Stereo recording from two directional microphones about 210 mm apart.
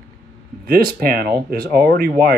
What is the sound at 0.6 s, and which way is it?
Speech, 45° right (ahead or behind).